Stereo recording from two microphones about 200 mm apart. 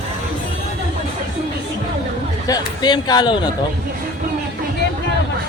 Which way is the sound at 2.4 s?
20° left (ahead or behind).